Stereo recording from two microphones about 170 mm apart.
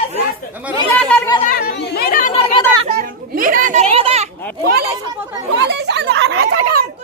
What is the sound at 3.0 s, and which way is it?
Children playing, 55° right (ahead or behind).